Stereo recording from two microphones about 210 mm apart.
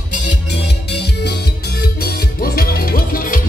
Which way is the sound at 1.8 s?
45° left (ahead or behind).